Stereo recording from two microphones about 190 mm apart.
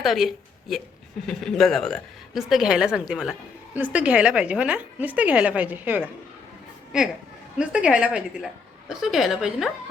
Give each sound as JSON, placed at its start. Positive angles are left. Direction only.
{"t": 0.0, "sound": "a woman's voice", "side_deg": 0}